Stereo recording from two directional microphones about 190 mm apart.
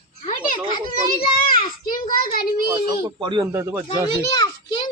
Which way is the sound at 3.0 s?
20° right (ahead or behind).